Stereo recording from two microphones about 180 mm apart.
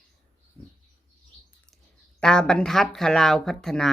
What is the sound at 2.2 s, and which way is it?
A man's voice, 5° left (ahead or behind).